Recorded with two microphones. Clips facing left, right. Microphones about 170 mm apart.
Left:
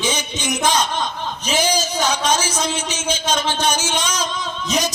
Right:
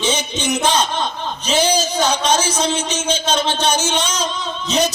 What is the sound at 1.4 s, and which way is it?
Music, 10° left (ahead or behind).